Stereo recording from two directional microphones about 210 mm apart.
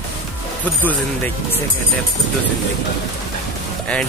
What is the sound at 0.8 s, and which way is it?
Speech, 10° left (ahead or behind).